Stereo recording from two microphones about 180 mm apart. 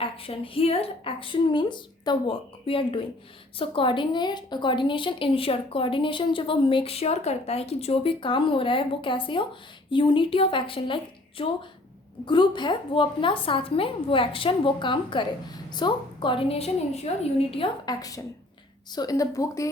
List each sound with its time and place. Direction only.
0.0 s a woman's voice: 30° left (ahead or behind)
17.5 s a woman's voice: 25° left (ahead or behind)